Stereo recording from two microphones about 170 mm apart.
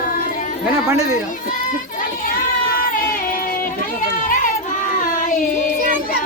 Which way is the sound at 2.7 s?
55° left (ahead or behind).